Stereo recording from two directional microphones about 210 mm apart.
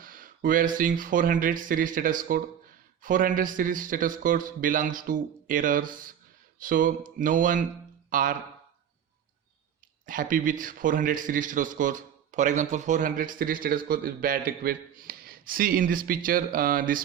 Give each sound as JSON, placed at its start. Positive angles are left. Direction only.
{"t": 0.0, "sound": "a man's voice", "side_deg": -40}
{"t": 10.1, "sound": "a man's voice", "side_deg": -40}